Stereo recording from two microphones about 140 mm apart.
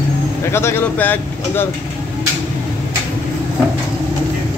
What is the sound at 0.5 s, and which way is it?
Speech, 20° left (ahead or behind).